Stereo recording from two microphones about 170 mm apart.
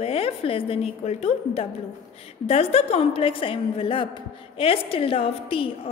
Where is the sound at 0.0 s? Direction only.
35° left (ahead or behind).